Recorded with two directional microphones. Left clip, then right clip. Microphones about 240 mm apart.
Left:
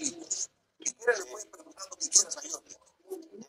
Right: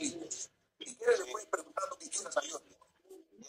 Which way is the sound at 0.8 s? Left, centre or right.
Left.